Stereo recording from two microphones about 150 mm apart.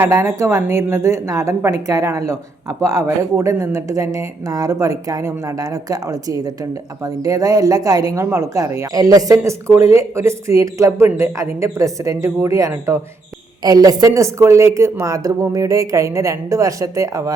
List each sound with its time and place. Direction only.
0.0 s a woman's voice: 20° right (ahead or behind)